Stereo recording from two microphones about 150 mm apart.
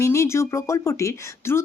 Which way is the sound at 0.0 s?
20° left (ahead or behind).